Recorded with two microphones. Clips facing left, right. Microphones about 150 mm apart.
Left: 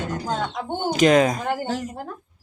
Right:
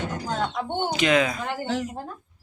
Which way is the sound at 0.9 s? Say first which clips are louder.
Left 7 dB; 40° left (ahead or behind).